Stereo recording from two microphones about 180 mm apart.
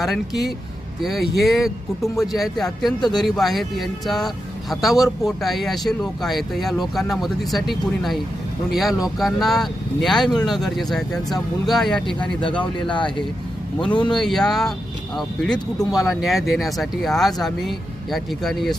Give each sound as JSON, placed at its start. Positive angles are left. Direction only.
{"t": 1.0, "sound": "speech", "side_deg": 0}
{"t": 12.4, "sound": "speech", "side_deg": 25}
{"t": 14.0, "sound": "speech", "side_deg": 5}